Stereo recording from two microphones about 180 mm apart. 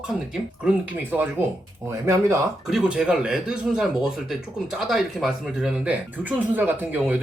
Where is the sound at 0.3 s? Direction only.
5° right (ahead or behind).